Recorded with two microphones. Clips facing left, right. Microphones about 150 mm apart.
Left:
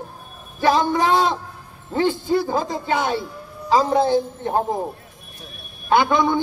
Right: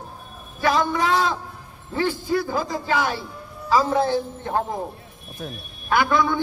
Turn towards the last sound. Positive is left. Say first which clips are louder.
# left 3 dB
turn(degrees=20)  # may be behind; listen again after turning